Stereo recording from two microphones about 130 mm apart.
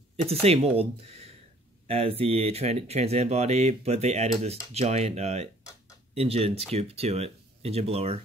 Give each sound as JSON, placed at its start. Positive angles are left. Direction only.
{"t": 0.2, "sound": "speech", "side_deg": -50}